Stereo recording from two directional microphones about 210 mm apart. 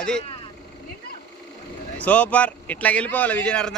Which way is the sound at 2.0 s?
5° left (ahead or behind).